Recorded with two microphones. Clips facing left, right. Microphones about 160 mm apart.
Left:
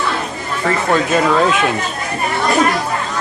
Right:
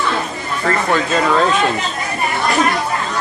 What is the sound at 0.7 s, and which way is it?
Speech, 5° left (ahead or behind).